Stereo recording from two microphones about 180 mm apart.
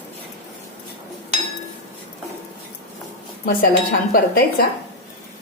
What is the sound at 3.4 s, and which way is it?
Speech, 55° left (ahead or behind).